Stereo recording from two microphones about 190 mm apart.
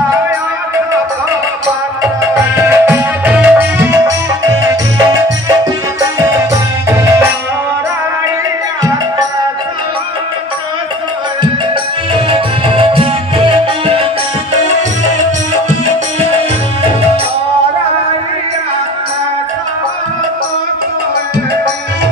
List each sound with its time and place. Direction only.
2.5 s music: 15° right (ahead or behind)
6.5 s music: 15° right (ahead or behind)
12.3 s music: 30° right (ahead or behind)